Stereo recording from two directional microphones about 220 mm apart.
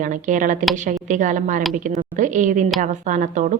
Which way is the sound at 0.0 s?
35° right (ahead or behind).